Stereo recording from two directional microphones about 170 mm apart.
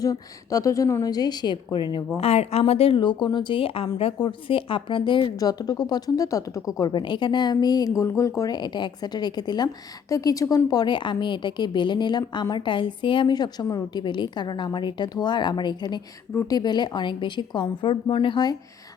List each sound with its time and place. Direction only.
0.0 s a woman's voice: 20° left (ahead or behind)
2.1 s a woman's voice: 35° left (ahead or behind)